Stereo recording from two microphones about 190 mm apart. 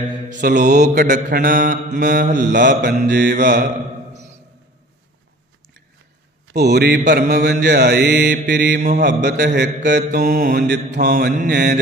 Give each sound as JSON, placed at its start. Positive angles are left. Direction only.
{"t": 0.6, "sound": "mantra", "side_deg": -40}
{"t": 2.5, "sound": "mantra", "side_deg": -65}
{"t": 2.9, "sound": "mantra", "side_deg": -40}
{"t": 3.2, "sound": "mantra", "side_deg": -60}
{"t": 6.4, "sound": "mantra", "side_deg": -60}